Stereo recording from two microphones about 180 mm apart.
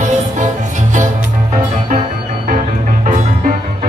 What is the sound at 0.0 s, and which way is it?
Music, 45° right (ahead or behind).